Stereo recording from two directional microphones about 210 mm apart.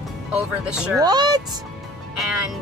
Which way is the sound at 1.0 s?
20° right (ahead or behind).